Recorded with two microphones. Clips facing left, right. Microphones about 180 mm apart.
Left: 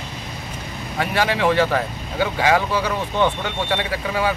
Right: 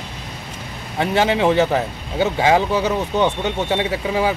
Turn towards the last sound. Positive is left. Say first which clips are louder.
# right 3 dB
turn(degrees=-20)  # may be behind; listen again after turning